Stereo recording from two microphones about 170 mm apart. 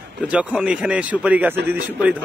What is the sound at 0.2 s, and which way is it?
A man's voice, 5° right (ahead or behind).